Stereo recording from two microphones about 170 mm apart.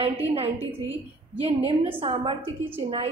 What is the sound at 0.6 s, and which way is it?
Speech, 10° right (ahead or behind).